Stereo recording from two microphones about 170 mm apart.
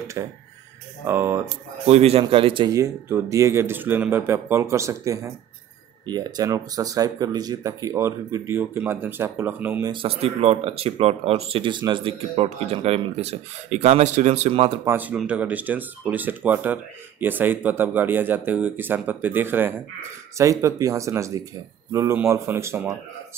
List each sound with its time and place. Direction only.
0.2 s speech: 20° right (ahead or behind)
1.9 s speech: 35° right (ahead or behind)
2.7 s speech: 15° right (ahead or behind)
9.8 s speech: 30° right (ahead or behind)
14.9 s speech: 10° right (ahead or behind)